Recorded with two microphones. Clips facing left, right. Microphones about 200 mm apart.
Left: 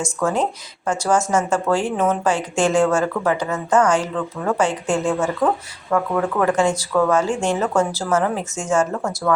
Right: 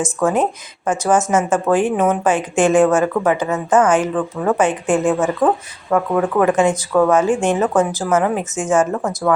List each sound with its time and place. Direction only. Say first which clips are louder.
0.2 s speech: right 3 dB; 20° right (ahead or behind)